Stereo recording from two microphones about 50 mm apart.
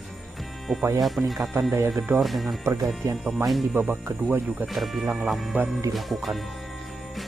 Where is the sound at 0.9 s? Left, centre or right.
Centre.